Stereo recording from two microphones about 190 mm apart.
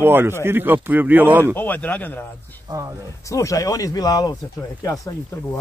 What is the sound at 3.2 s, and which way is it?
Speech, 15° left (ahead or behind).